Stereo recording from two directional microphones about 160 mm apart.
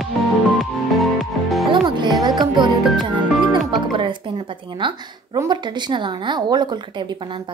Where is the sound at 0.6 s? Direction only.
Centre (ahead or behind).